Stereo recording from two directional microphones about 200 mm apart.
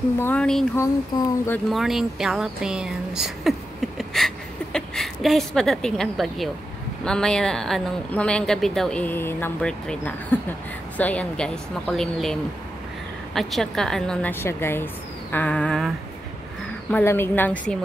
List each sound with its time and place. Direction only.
0.2 s speech: 5° left (ahead or behind)
0.7 s speech: 15° left (ahead or behind)
1.7 s speech: centre (ahead or behind)
4.0 s a sound: centre (ahead or behind)
4.7 s a woman's voice: centre (ahead or behind)
16.9 s speech: 10° left (ahead or behind)